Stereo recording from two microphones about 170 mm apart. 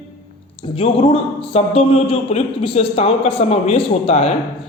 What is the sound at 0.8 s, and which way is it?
A man's voice, 30° left (ahead or behind).